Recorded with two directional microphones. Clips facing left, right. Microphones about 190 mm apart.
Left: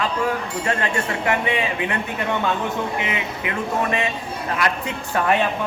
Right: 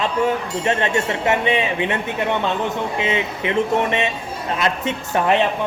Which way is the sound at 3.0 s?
25° right (ahead or behind).